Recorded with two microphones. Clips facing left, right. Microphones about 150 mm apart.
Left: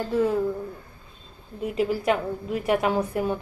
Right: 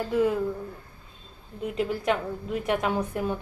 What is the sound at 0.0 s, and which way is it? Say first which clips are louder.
Speech: left 1 dB; centre (ahead or behind).